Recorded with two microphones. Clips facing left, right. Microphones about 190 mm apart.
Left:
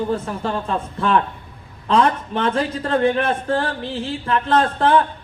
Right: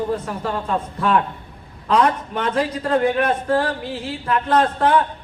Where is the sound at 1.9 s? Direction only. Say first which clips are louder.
Left 1 dB; 30° left (ahead or behind).